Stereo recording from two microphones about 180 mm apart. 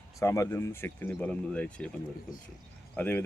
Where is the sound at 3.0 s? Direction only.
10° left (ahead or behind).